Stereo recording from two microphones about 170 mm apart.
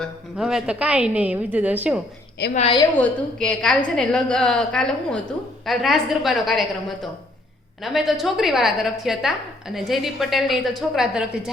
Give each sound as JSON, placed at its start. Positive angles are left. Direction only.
{"t": 0.0, "sound": "a woman's voice", "side_deg": 0}
{"t": 2.4, "sound": "a woman's voice", "side_deg": 75}
{"t": 2.9, "sound": "a woman's voice", "side_deg": 10}